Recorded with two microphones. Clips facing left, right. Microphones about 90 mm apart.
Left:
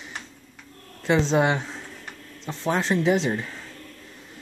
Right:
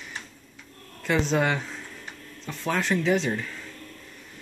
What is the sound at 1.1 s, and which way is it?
Speech, 25° left (ahead or behind).